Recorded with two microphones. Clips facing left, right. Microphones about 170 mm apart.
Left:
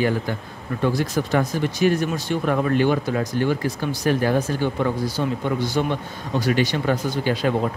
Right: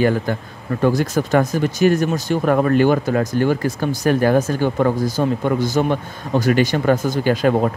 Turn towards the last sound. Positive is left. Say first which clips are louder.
# right 5 dB
turn(degrees=-50)  # may be behind; listen again after turning